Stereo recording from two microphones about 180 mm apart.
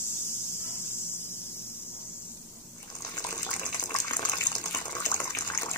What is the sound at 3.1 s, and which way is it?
Bathtub, 20° left (ahead or behind).